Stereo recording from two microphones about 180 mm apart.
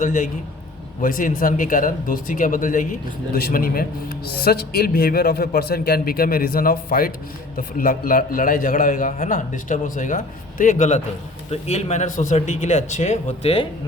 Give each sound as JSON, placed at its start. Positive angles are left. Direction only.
{"t": 0.0, "sound": "a man's voice", "side_deg": 45}